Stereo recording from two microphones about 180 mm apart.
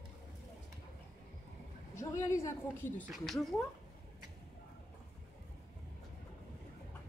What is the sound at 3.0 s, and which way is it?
Speech, centre (ahead or behind).